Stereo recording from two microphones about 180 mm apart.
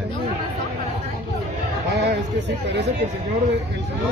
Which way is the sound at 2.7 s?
75° right (ahead or behind).